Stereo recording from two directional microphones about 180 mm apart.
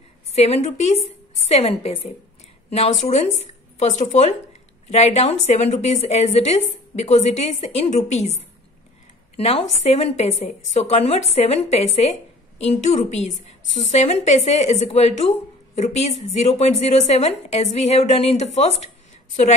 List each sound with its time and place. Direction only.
0.3 s a woman's voice: 35° left (ahead or behind)